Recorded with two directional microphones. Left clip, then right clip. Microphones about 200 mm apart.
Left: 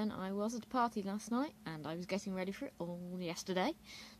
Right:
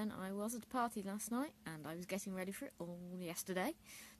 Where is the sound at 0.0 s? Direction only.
Centre (ahead or behind).